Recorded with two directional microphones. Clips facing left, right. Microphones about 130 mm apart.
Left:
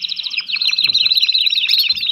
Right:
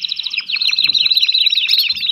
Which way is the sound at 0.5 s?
20° left (ahead or behind).